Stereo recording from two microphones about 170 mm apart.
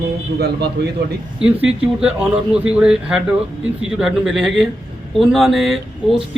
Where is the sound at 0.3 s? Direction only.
70° right (ahead or behind).